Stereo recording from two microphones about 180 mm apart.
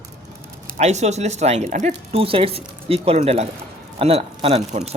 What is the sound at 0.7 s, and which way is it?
Speech, 40° right (ahead or behind).